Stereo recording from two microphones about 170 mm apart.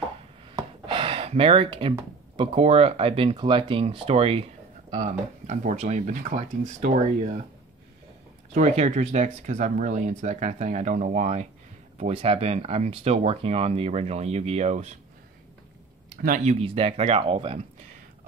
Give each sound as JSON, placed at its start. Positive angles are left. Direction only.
{"t": 0.8, "sound": "gasp", "side_deg": -30}
{"t": 2.3, "sound": "speech", "side_deg": -30}
{"t": 4.9, "sound": "speech", "side_deg": -50}
{"t": 8.5, "sound": "speech", "side_deg": -40}
{"t": 16.2, "sound": "speech", "side_deg": -50}